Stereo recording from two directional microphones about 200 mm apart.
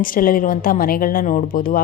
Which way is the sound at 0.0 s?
45° left (ahead or behind).